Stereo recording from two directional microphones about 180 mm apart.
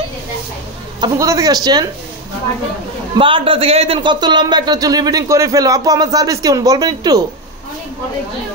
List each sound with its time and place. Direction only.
1.0 s a man's voice: 15° right (ahead or behind)
3.2 s a man's voice: 30° right (ahead or behind)